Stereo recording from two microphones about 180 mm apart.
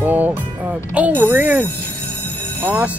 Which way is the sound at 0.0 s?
10° right (ahead or behind).